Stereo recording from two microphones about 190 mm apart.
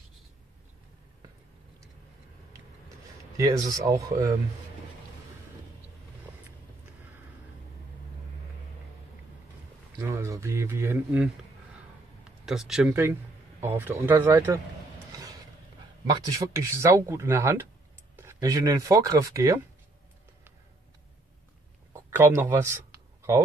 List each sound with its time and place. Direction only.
3.3 s speech: 15° right (ahead or behind)
9.9 s speech: 15° right (ahead or behind)
12.3 s speech: centre (ahead or behind)
16.1 s speech: 20° right (ahead or behind)
22.1 s speech: 10° right (ahead or behind)